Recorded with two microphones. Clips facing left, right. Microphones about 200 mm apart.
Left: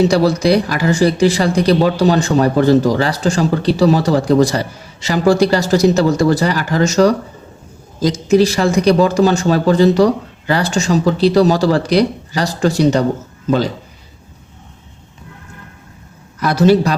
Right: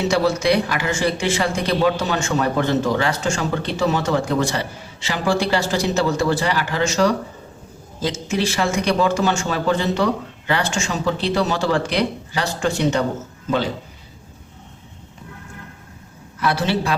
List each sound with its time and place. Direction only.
0.1 s speech: 35° left (ahead or behind)
16.4 s speech: 40° left (ahead or behind)